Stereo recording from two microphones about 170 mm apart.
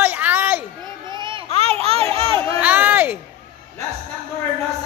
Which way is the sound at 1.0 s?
30° right (ahead or behind).